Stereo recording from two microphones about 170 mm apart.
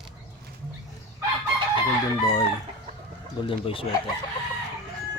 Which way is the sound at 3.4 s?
30° left (ahead or behind).